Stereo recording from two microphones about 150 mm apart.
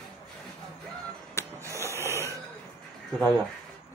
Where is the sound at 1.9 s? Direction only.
20° right (ahead or behind).